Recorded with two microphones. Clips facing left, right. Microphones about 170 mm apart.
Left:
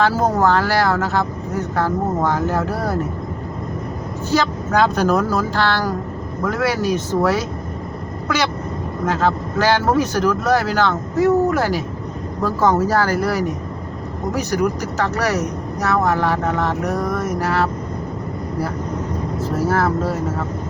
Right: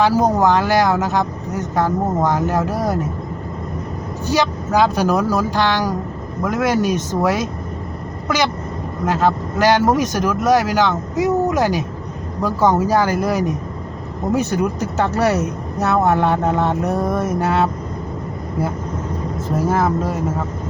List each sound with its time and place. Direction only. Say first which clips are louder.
0.0 s speech: right 2 dB; 15° right (ahead or behind)
4.3 s speech: right 1 dB; 10° right (ahead or behind)
9.0 s speech: right 2 dB; 15° right (ahead or behind)
19.5 s speech: right 1 dB; 15° right (ahead or behind)